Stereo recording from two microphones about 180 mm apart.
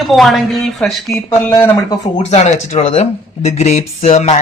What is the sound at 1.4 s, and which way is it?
Speech, 15° left (ahead or behind).